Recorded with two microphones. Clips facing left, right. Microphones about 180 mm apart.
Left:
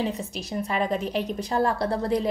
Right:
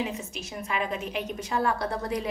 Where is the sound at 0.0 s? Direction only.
35° left (ahead or behind).